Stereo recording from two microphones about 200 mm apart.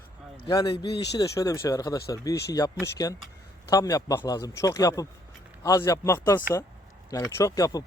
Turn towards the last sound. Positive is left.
turn(degrees=20)  # may be behind; listen again after turning